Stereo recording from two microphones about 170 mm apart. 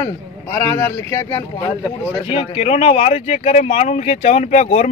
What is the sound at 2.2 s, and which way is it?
Speech, 35° left (ahead or behind).